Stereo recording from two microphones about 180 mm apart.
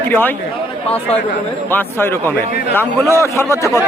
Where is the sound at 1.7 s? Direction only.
10° left (ahead or behind).